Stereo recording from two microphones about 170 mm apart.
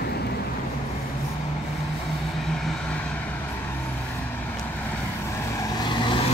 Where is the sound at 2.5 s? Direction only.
5° left (ahead or behind).